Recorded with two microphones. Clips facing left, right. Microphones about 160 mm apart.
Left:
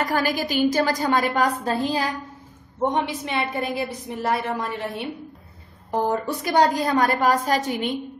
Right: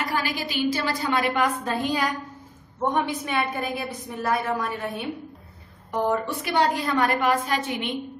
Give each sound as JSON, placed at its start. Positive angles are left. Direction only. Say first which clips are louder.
{"t": 0.0, "sound": "a woman's voice", "louder": "left 4 dB", "side_deg": 45}
{"t": 5.9, "sound": "a woman's voice", "louder": "left 1 dB", "side_deg": 35}